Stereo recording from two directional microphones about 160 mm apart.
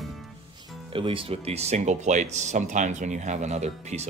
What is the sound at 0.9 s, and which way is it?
Speech, 35° right (ahead or behind).